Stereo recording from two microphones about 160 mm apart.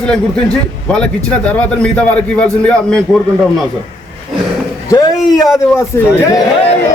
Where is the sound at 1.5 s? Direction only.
10° left (ahead or behind).